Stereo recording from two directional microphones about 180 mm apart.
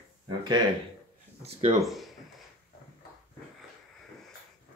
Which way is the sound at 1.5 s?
35° right (ahead or behind).